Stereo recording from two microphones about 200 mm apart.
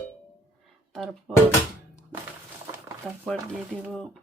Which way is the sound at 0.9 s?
Centre (ahead or behind).